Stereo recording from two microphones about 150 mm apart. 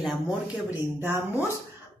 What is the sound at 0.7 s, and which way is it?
Speech, 15° right (ahead or behind).